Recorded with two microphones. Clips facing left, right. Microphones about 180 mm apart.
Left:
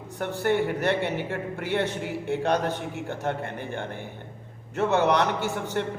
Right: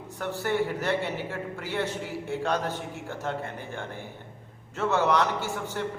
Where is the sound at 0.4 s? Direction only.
60° left (ahead or behind).